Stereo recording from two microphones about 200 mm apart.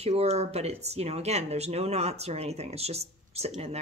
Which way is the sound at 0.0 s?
30° right (ahead or behind).